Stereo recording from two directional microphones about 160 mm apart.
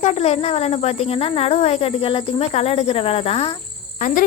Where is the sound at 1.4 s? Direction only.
40° left (ahead or behind).